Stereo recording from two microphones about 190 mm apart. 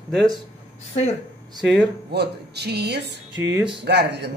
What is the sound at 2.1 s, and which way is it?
A woman's voice, 60° right (ahead or behind).